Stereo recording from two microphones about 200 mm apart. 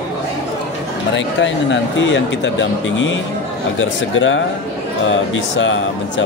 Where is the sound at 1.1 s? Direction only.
65° left (ahead or behind).